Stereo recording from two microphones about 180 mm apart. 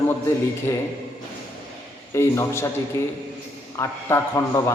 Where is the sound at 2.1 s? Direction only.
15° left (ahead or behind).